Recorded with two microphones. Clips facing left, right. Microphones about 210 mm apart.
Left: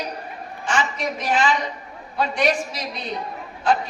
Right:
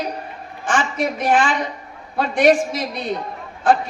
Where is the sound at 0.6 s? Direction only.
50° right (ahead or behind).